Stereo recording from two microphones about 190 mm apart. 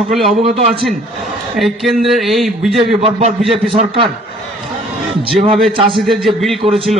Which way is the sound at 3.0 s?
30° right (ahead or behind).